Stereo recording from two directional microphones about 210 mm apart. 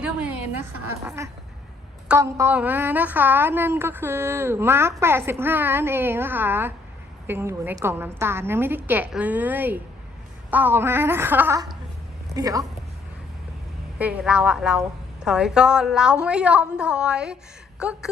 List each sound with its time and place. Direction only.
0.0 s a sound: 5° right (ahead or behind)
2.0 s a woman's voice: 10° right (ahead or behind)
14.0 s a woman's voice: 5° right (ahead or behind)